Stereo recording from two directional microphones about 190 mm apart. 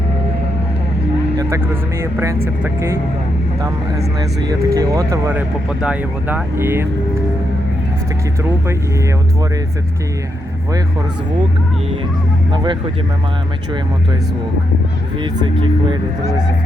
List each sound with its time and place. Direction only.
1.4 s speech: 15° right (ahead or behind)
4.4 s speech: 20° right (ahead or behind)
12.5 s speech: 25° right (ahead or behind)
15.2 s speech: 25° right (ahead or behind)